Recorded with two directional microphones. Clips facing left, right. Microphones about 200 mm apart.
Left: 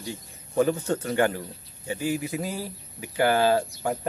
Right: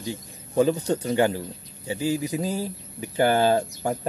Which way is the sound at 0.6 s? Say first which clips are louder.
Right 2 dB; 15° right (ahead or behind).